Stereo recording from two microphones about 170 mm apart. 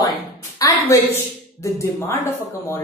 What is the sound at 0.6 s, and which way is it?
A woman's voice, 20° left (ahead or behind).